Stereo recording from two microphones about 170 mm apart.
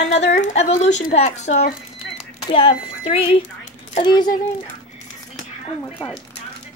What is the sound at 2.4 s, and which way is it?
Speech, 30° left (ahead or behind).